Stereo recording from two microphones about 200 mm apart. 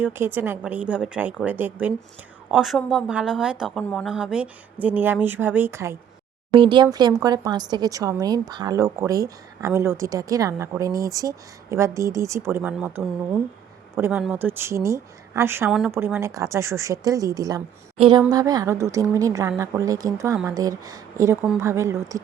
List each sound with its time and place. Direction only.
0.0 s a woman's voice: 10° right (ahead or behind)
6.5 s a woman's voice: 25° right (ahead or behind)
17.9 s a woman's voice: 30° right (ahead or behind)